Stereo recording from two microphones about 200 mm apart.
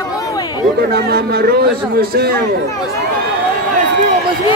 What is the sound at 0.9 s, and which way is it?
Speech, 50° right (ahead or behind).